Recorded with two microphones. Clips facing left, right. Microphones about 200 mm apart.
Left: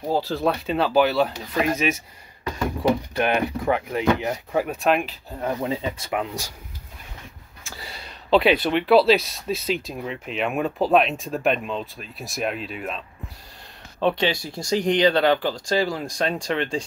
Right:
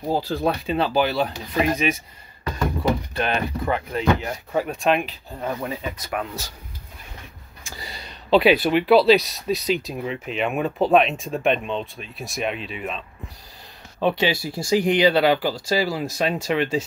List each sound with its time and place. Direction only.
0.1 s speech: centre (ahead or behind)
3.2 s speech: 15° left (ahead or behind)
4.5 s speech: 5° left (ahead or behind)
5.4 s speech: 20° left (ahead or behind)
6.2 s speech: 15° left (ahead or behind)
7.6 s speech: centre (ahead or behind)